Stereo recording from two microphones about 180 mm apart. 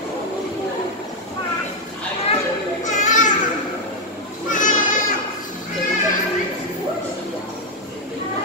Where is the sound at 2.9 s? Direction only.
45° left (ahead or behind).